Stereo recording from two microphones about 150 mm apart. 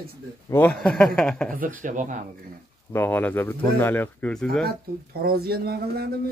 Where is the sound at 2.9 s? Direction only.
10° left (ahead or behind).